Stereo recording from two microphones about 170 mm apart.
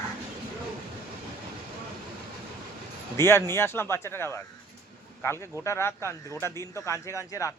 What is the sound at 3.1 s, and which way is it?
A man's voice, 15° left (ahead or behind).